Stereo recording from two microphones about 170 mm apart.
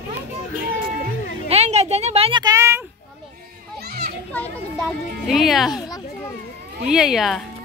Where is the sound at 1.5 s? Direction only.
40° right (ahead or behind); by 2.8 s 15° right (ahead or behind).